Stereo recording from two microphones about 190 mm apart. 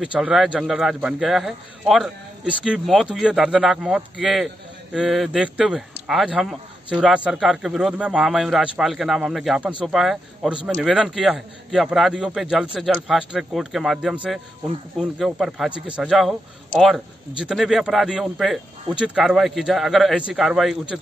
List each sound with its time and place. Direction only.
0.0 s speech: 5° right (ahead or behind)
17.4 s speech: 5° right (ahead or behind)